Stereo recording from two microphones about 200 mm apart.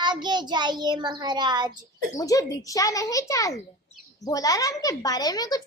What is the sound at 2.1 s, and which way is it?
Speech, 15° left (ahead or behind).